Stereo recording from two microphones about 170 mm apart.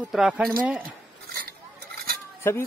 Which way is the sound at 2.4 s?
15° left (ahead or behind).